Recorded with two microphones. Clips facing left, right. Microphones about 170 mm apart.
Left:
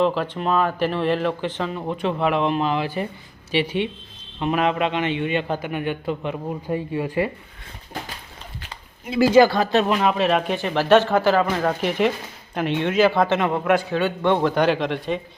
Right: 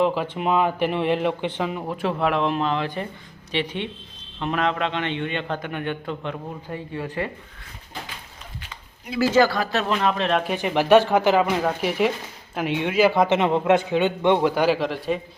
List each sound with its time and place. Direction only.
0.0 s a man's voice: 10° right (ahead or behind); by 7.3 s 10° left (ahead or behind)
8.7 s a sound: 25° left (ahead or behind)
9.3 s a man's voice: 20° left (ahead or behind)
10.5 s a man's voice: 15° right (ahead or behind)
11.6 s a man's voice: 5° right (ahead or behind)